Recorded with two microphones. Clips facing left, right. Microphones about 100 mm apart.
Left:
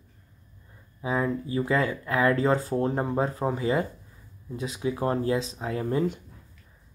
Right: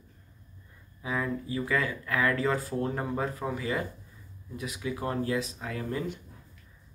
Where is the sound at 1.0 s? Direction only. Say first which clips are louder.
Left 5 dB; 30° left (ahead or behind).